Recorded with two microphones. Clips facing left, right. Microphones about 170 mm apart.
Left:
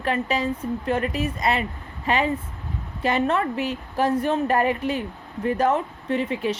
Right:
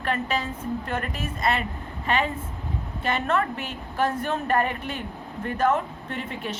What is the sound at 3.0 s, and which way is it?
A woman's voice, 35° left (ahead or behind).